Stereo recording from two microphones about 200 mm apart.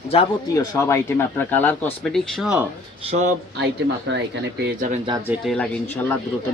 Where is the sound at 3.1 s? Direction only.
35° right (ahead or behind).